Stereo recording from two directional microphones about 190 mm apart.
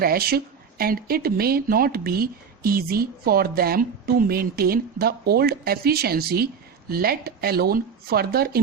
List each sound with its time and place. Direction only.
0.0 s speech: 55° right (ahead or behind)